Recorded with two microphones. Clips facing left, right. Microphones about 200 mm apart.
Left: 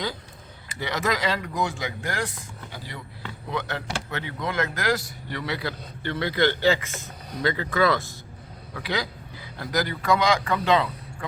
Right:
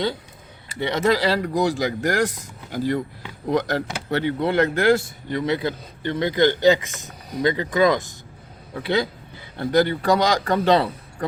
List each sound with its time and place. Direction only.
0.8 s speech: 25° right (ahead or behind)